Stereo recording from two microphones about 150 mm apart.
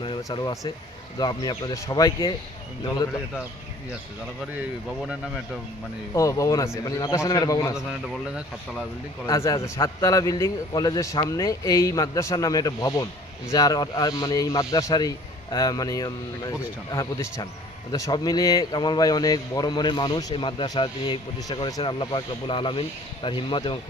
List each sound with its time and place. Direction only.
0.0 s speech: 30° left (ahead or behind)
6.1 s speech: 20° left (ahead or behind)
9.2 s speech: 20° left (ahead or behind)